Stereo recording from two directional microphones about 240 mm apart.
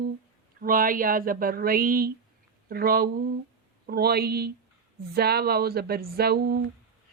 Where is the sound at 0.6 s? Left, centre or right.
Right.